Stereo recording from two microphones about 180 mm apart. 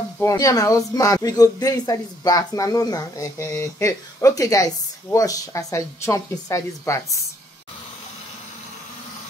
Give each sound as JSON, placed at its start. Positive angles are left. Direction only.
{"t": 0.2, "sound": "speech", "side_deg": 20}